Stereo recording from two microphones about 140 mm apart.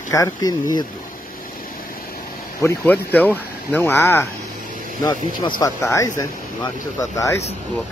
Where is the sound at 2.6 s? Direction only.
15° left (ahead or behind).